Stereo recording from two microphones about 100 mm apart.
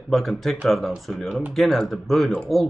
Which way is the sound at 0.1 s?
Centre (ahead or behind).